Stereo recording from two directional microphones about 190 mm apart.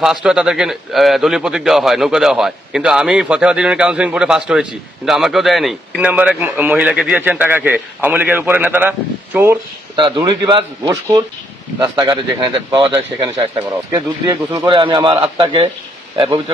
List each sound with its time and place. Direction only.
0.0 s a man's voice: 5° right (ahead or behind)
9.9 s speech: 25° right (ahead or behind)